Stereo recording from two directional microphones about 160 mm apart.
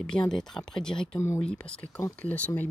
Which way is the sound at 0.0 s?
5° left (ahead or behind).